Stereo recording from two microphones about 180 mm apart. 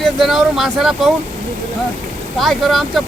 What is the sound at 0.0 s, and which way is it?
Speech, centre (ahead or behind).